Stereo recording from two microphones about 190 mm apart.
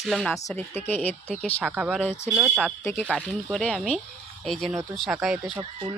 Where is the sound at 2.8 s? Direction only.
15° left (ahead or behind).